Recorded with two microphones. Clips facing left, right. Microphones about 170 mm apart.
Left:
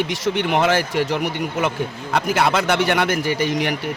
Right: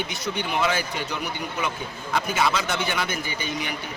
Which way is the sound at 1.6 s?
70° left (ahead or behind).